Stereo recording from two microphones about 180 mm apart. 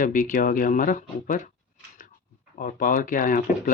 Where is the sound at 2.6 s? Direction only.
50° left (ahead or behind).